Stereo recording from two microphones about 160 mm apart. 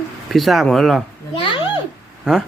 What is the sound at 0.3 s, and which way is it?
Speech, centre (ahead or behind).